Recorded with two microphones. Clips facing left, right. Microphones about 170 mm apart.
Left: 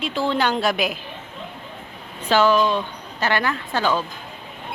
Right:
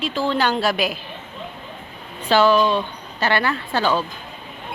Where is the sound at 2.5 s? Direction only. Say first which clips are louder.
Right 1 dB; 10° right (ahead or behind).